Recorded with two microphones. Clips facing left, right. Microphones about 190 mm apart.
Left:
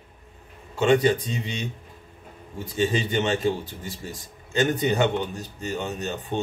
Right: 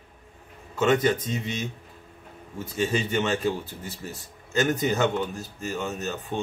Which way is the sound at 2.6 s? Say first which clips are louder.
Left 2 dB; 15° left (ahead or behind).